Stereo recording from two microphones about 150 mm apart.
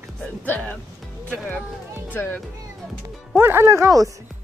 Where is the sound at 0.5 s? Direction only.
10° left (ahead or behind).